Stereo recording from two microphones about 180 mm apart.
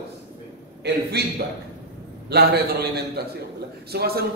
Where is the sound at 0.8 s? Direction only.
65° right (ahead or behind).